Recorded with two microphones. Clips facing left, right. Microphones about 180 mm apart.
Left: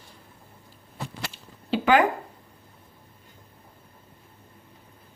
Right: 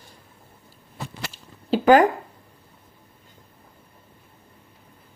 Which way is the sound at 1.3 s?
40° right (ahead or behind).